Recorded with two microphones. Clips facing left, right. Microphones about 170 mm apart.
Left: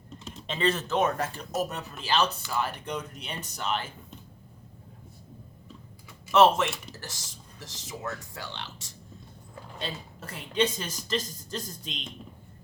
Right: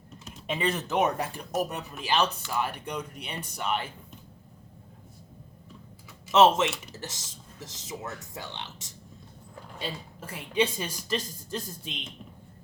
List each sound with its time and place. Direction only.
0.4 s speech: 15° right (ahead or behind)
6.3 s speech: 20° right (ahead or behind)
9.7 s speech: 10° right (ahead or behind)